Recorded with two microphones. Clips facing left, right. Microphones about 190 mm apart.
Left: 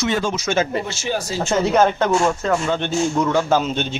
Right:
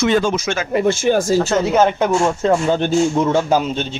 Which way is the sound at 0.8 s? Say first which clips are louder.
Right 9 dB; 50° right (ahead or behind).